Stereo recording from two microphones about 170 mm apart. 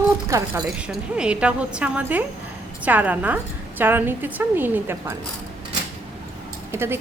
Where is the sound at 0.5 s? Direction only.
5° right (ahead or behind).